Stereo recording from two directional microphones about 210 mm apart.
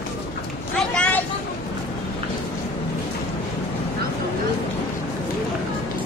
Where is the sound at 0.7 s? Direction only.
5° left (ahead or behind).